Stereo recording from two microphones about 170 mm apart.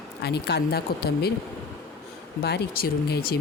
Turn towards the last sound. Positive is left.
turn(degrees=65)  # may be behind; listen again after turning